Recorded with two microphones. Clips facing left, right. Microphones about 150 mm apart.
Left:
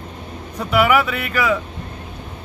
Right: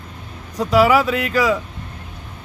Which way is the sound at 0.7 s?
35° right (ahead or behind).